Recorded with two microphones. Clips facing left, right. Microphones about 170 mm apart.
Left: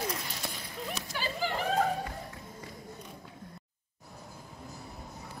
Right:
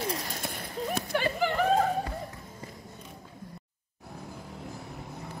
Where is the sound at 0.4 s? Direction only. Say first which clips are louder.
Right 5 dB; 55° right (ahead or behind).